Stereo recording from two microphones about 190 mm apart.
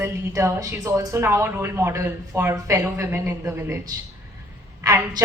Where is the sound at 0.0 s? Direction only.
15° right (ahead or behind).